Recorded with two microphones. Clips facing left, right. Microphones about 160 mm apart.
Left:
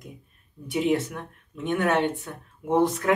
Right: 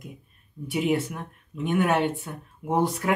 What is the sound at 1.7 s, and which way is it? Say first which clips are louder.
Speech: even; 20° right (ahead or behind).